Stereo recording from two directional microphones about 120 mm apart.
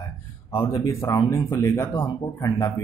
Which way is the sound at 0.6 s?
25° left (ahead or behind).